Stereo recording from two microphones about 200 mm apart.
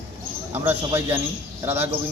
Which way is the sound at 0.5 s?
10° right (ahead or behind).